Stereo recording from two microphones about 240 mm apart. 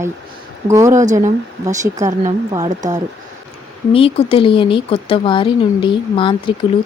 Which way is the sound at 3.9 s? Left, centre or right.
Left.